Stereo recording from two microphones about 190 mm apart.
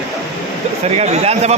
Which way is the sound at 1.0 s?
35° right (ahead or behind).